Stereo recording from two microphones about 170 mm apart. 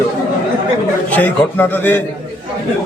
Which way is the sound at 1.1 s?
10° left (ahead or behind).